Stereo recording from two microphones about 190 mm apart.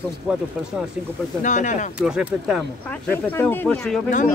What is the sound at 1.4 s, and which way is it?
Speech, 40° left (ahead or behind).